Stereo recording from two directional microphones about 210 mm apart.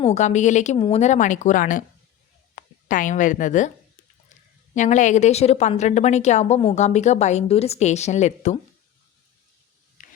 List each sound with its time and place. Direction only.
0.0 s a woman's voice: 35° left (ahead or behind)
4.7 s a woman's voice: 35° left (ahead or behind)
10.0 s a sound: 40° left (ahead or behind)